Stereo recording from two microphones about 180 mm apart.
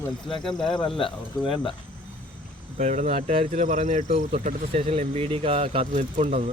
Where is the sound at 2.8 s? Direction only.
40° right (ahead or behind).